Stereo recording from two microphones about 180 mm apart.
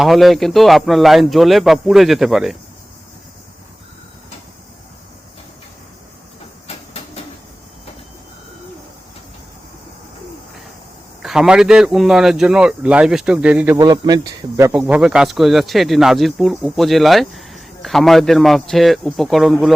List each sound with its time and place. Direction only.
0.0 s speech: centre (ahead or behind)
6.7 s train: 35° left (ahead or behind)
11.2 s speech: 5° right (ahead or behind)
13.7 s speech: 20° right (ahead or behind); by 19.5 s centre (ahead or behind)